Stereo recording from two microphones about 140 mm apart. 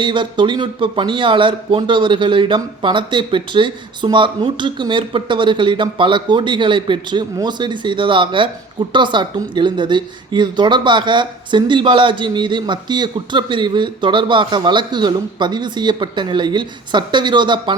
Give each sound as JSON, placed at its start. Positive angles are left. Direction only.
{"t": 0.0, "sound": "a woman's voice", "side_deg": -35}